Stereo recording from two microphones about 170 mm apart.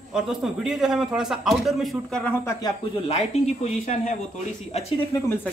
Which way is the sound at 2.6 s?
35° left (ahead or behind).